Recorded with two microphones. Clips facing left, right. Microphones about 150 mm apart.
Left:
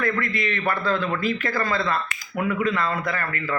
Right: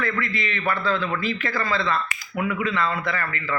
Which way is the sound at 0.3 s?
50° left (ahead or behind).